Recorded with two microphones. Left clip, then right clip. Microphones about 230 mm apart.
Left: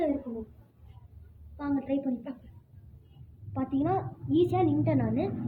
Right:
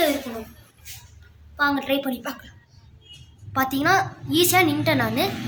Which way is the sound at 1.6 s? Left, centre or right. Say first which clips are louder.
Right 10 dB; right.